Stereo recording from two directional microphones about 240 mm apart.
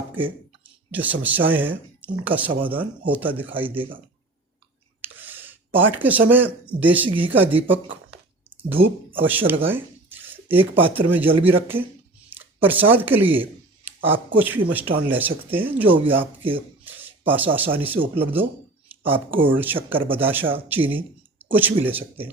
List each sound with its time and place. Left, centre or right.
0.1 s speech: centre
5.0 s a sound: centre
6.7 s speech: centre
8.4 s a sound: centre
9.1 s speech: centre
16.4 s speech: right
16.8 s a sound: centre
17.7 s speech: centre
19.5 s speech: centre